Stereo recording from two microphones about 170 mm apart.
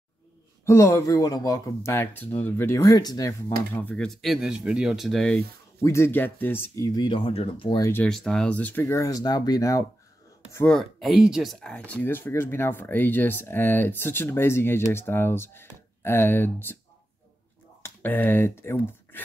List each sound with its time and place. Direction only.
0.7 s speech: 15° left (ahead or behind)
5.8 s speech: 15° left (ahead or behind)
8.0 s speech: 5° left (ahead or behind); by 9.8 s 20° left (ahead or behind)
10.7 s speech: centre (ahead or behind)
17.8 s speech: 10° left (ahead or behind)